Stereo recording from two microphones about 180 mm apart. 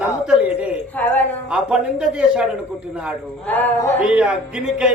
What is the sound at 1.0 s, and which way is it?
Speech, 10° left (ahead or behind).